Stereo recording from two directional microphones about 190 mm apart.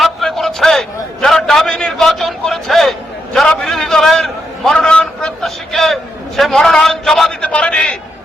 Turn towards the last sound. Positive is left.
turn(degrees=5)  # may be behind; listen again after turning